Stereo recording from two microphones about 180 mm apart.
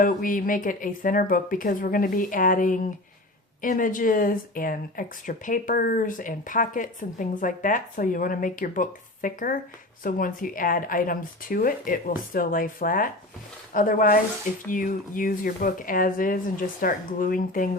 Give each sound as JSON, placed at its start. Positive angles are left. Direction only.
{"t": 0.0, "sound": "speech", "side_deg": 50}